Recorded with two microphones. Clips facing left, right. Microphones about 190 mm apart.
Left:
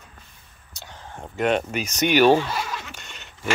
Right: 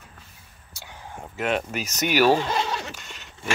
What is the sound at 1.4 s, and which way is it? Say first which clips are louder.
Speech: left 4 dB; centre (ahead or behind).